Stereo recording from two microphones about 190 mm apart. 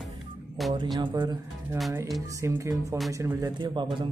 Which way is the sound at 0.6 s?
Centre (ahead or behind).